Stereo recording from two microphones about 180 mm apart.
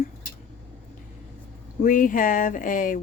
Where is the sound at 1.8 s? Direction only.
45° left (ahead or behind).